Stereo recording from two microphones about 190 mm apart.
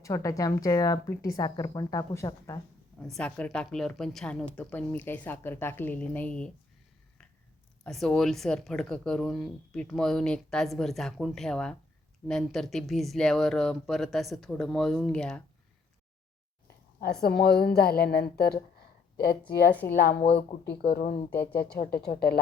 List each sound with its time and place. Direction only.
0.0 s a woman's voice: 15° left (ahead or behind)
3.0 s a woman's voice: 5° left (ahead or behind)
7.9 s speech: centre (ahead or behind)
17.0 s speech: 55° left (ahead or behind)
19.8 s a woman's voice: 15° left (ahead or behind)
20.1 s speech: 30° left (ahead or behind)
20.8 s a woman's voice: 55° left (ahead or behind)